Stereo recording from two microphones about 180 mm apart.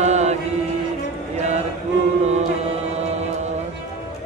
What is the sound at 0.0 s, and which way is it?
Mantra, 40° right (ahead or behind).